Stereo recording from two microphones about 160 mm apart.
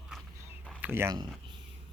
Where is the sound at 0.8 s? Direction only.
15° right (ahead or behind).